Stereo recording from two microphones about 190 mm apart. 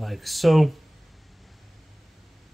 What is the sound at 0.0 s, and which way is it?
Speech, centre (ahead or behind).